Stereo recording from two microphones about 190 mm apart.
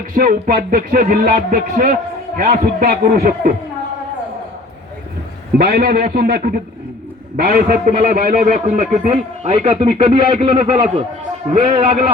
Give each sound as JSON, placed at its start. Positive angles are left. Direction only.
{"t": 0.1, "sound": "speech", "side_deg": -45}
{"t": 5.5, "sound": "a man's voice", "side_deg": -55}